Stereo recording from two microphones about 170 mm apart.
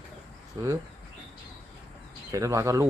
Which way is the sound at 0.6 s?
25° right (ahead or behind).